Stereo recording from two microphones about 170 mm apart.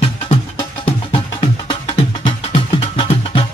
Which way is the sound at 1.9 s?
30° left (ahead or behind).